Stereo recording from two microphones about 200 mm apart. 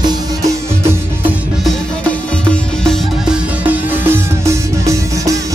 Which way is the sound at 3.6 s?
10° right (ahead or behind).